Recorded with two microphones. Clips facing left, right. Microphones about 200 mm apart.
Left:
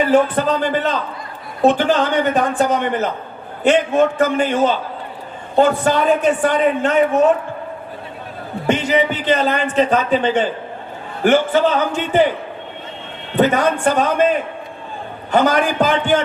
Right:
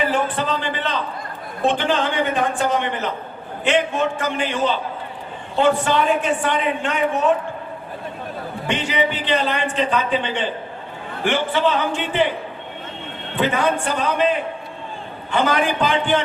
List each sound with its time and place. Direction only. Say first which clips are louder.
0.1 s a man's voice: left 7 dB; 40° left (ahead or behind)
8.6 s a man's voice: left 5 dB; 45° left (ahead or behind)
13.3 s a man's voice: left 5 dB; 40° left (ahead or behind)